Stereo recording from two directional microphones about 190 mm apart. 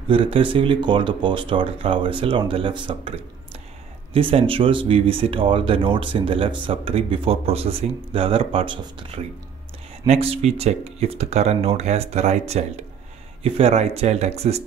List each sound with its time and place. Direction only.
0.1 s speech: 30° right (ahead or behind)